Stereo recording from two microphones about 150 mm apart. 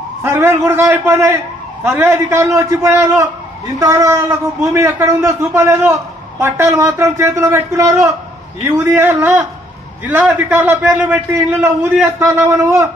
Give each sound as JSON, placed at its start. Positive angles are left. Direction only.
{"t": 0.2, "sound": "a man's voice", "side_deg": -15}